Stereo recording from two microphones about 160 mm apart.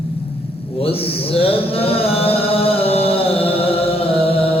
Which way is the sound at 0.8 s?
35° left (ahead or behind).